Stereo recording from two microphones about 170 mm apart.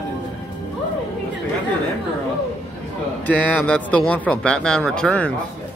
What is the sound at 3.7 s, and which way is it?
Speech, 5° left (ahead or behind).